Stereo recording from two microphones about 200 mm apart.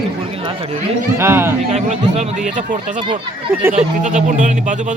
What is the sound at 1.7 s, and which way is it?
Speech, 30° right (ahead or behind).